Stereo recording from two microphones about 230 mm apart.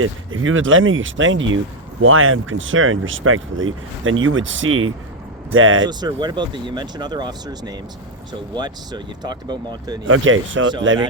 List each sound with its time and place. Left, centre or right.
0.0 s speech: right
5.8 s speech: centre
10.1 s speech: right